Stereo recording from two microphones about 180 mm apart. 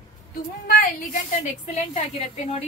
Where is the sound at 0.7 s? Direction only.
45° left (ahead or behind).